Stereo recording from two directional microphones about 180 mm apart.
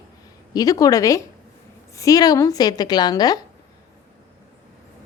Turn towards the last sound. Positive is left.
turn(degrees=20)  # may be behind; listen again after turning